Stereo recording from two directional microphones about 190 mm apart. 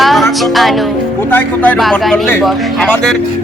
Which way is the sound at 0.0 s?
Centre (ahead or behind).